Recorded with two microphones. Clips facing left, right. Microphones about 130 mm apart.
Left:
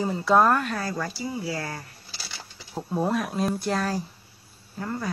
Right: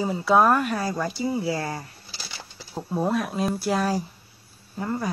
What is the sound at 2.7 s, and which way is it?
Speech, centre (ahead or behind).